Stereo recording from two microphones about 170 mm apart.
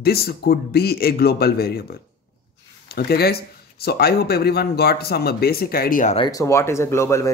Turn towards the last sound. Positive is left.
turn(degrees=15)  # may be behind; listen again after turning